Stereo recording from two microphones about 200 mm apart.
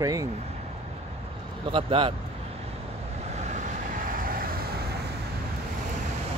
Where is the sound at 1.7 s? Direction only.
25° right (ahead or behind).